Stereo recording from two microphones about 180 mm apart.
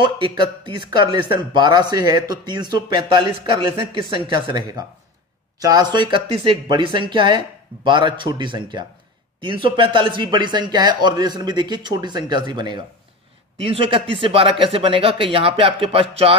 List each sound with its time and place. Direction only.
0.0 s speech: 25° right (ahead or behind)